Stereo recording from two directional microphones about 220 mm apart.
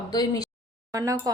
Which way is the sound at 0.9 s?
15° right (ahead or behind).